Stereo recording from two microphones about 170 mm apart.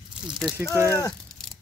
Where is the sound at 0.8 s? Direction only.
15° right (ahead or behind).